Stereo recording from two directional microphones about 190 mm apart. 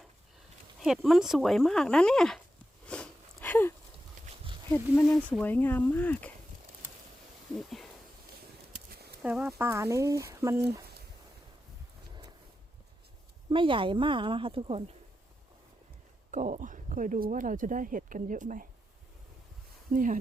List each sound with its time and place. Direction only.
0.8 s speech: centre (ahead or behind)
2.8 s a sound: 5° left (ahead or behind)
4.3 s a sound: 40° right (ahead or behind)
5.0 s speech: centre (ahead or behind)
9.2 s speech: 5° right (ahead or behind)
13.5 s speech: 25° right (ahead or behind)
16.3 s speech: 40° right (ahead or behind)
19.9 s speech: 45° right (ahead or behind)